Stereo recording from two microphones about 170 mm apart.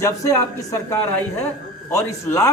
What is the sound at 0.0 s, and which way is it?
Speech, 20° left (ahead or behind).